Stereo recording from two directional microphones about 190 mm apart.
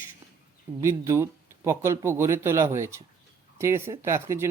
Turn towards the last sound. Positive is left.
turn(degrees=-15)  # may be behind; listen again after turning